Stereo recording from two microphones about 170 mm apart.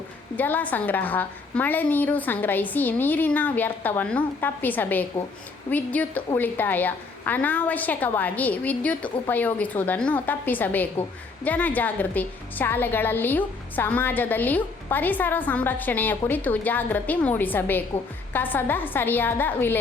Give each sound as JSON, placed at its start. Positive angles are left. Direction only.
{"t": 0.3, "sound": "a woman's voice", "side_deg": 10}